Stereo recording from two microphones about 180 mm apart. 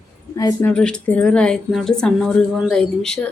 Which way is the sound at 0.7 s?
5° left (ahead or behind).